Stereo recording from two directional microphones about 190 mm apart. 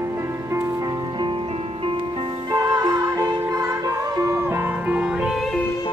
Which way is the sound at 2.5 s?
20° right (ahead or behind).